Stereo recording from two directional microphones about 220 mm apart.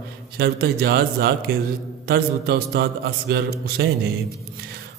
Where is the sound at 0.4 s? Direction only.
45° right (ahead or behind).